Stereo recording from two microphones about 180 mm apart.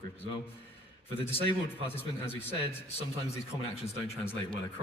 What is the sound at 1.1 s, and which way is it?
Speech, 30° left (ahead or behind).